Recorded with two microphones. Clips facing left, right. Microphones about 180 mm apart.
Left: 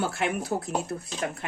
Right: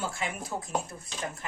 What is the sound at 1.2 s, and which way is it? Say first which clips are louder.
Speech: left 5 dB; 85° left.